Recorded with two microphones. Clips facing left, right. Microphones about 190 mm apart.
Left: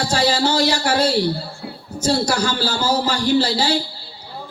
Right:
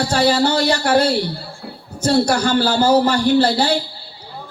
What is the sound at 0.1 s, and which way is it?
A man's voice, 60° right (ahead or behind).